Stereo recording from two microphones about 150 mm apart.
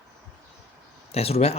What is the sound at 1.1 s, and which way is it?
Speech, 40° left (ahead or behind).